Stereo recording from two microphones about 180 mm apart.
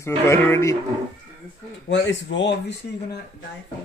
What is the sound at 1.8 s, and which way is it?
Speech, 90° left.